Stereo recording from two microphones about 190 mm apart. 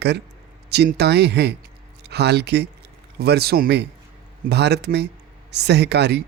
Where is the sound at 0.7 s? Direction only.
60° right (ahead or behind).